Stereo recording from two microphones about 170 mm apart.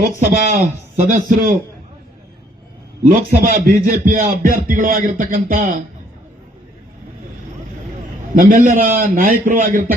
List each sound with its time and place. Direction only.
0.4 s speech: 50° right (ahead or behind)
3.0 s a man's voice: 55° right (ahead or behind)
8.4 s a man's voice: 50° right (ahead or behind)